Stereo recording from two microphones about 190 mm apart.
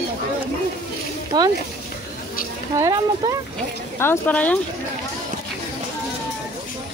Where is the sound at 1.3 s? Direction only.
20° right (ahead or behind).